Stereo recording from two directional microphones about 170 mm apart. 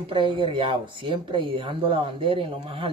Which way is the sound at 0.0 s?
30° right (ahead or behind).